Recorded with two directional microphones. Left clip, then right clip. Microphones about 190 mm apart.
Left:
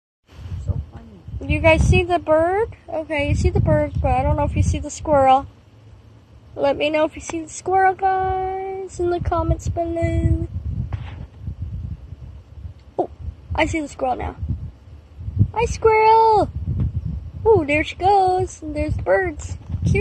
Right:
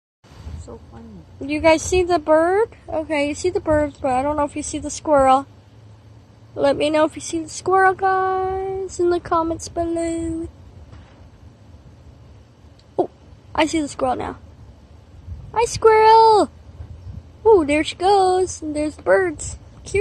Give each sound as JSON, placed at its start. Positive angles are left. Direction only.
{"t": 0.7, "sound": "a sound", "side_deg": -40}
{"t": 1.4, "sound": "a woman's voice", "side_deg": -15}
{"t": 6.5, "sound": "a woman's voice", "side_deg": -20}
{"t": 13.0, "sound": "a sound", "side_deg": -15}
{"t": 15.5, "sound": "speech", "side_deg": -20}
{"t": 17.5, "sound": "speech", "side_deg": -20}